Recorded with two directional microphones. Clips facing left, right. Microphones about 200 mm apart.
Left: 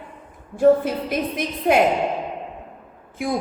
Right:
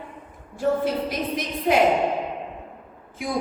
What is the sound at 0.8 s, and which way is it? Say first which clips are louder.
Speech: left 1 dB; 55° left (ahead or behind).